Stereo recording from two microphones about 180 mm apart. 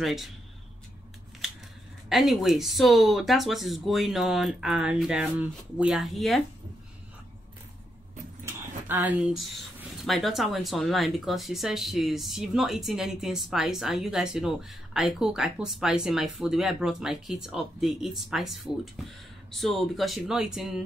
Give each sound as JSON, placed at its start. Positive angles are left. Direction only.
{"t": 0.0, "sound": "speech", "side_deg": 0}
{"t": 1.4, "sound": "scissors", "side_deg": 0}
{"t": 2.0, "sound": "speech", "side_deg": 0}
{"t": 8.5, "sound": "speech", "side_deg": -10}